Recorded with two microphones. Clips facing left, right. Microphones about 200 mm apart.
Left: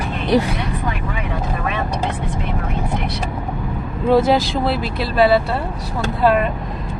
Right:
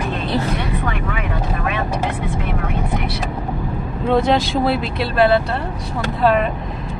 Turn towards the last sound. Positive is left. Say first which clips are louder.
# even
turn(degrees=0)  # may be behind; listen again after turning